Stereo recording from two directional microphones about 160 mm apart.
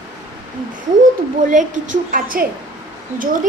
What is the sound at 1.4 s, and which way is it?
A woman's voice, 55° right (ahead or behind).